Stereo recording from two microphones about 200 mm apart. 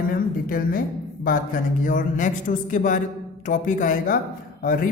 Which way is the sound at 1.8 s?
40° left (ahead or behind).